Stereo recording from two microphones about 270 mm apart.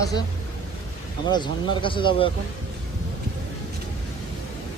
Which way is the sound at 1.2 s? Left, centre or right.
Centre.